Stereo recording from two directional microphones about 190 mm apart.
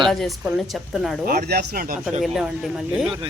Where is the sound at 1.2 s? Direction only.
55° right (ahead or behind).